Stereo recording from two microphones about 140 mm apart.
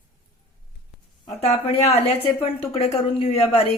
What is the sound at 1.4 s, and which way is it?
A woman's voice, 50° left (ahead or behind).